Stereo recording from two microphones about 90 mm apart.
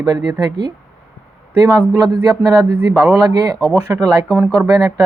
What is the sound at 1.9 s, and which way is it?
Speech, 45° right (ahead or behind).